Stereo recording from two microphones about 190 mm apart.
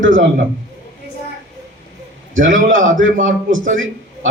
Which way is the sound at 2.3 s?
90° right.